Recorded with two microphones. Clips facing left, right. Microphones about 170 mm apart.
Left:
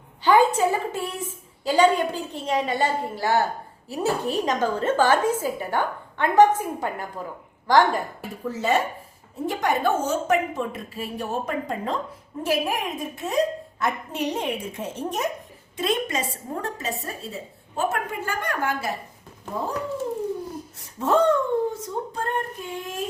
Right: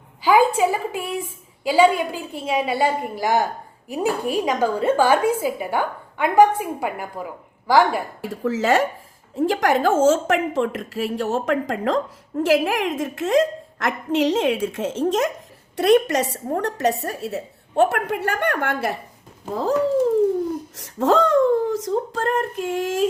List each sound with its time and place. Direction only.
0.2 s a woman's voice: 5° right (ahead or behind)
8.3 s a woman's voice: 90° right
15.7 s a woman's voice: 75° right (ahead or behind)
20.7 s a woman's voice: 90° right